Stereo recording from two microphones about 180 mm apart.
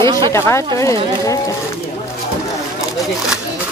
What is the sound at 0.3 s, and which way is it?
A woman's voice, 15° left (ahead or behind).